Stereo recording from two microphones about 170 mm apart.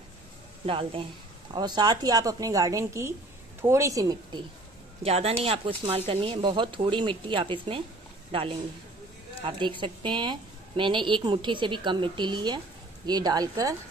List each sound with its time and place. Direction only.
0.7 s a woman's voice: 30° right (ahead or behind)
5.0 s a woman's voice: 35° right (ahead or behind); by 13.7 s 20° right (ahead or behind)